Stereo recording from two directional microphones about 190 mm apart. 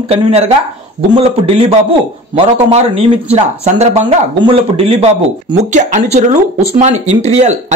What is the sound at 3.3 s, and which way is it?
Speech, 35° right (ahead or behind).